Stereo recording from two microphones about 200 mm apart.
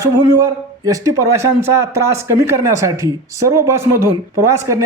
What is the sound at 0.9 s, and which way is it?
Speech, 15° right (ahead or behind).